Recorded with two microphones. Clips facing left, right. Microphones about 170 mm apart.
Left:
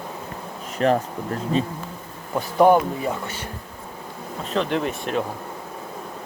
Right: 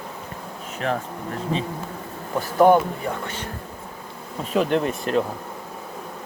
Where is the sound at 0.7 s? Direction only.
35° left (ahead or behind).